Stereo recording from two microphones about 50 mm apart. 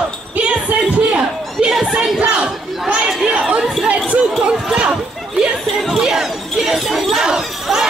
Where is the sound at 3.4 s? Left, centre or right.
Centre.